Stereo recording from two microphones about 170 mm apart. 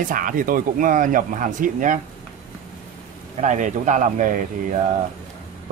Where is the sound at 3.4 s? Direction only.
45° right (ahead or behind).